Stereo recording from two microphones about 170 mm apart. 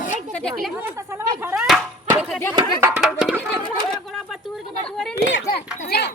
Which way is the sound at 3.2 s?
10° right (ahead or behind).